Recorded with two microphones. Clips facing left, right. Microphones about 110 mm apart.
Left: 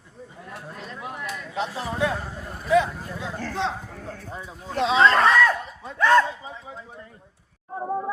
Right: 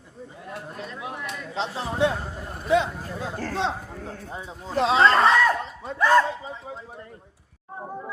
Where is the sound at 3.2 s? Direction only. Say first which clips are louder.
Right 1 dB; 40° right (ahead or behind).